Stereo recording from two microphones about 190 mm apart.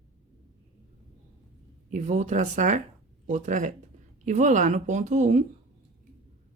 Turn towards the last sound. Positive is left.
turn(degrees=-40)  # may be behind; listen again after turning